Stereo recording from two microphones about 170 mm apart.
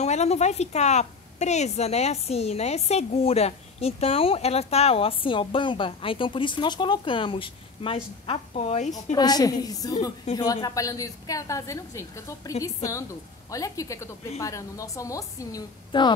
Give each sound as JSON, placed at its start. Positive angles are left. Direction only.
{"t": 0.0, "sound": "a woman's voice", "side_deg": 40}
{"t": 9.1, "sound": "a woman's voice", "side_deg": 25}